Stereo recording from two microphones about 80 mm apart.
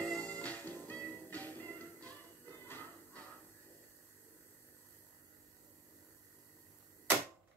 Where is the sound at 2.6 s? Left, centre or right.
Left.